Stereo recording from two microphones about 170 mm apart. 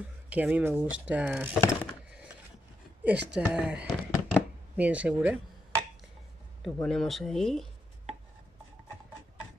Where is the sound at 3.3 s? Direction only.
5° right (ahead or behind).